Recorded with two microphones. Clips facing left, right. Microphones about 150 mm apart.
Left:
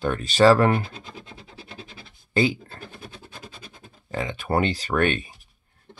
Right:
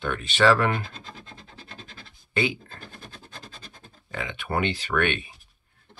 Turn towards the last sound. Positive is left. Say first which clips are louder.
# left 3 dB
turn(degrees=40)  # may be behind; listen again after turning